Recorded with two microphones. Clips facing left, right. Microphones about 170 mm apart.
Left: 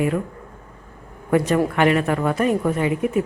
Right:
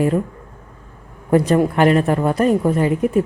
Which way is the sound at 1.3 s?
35° right (ahead or behind).